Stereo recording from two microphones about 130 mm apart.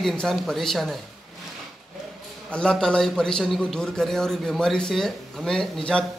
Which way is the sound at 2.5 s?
5° left (ahead or behind).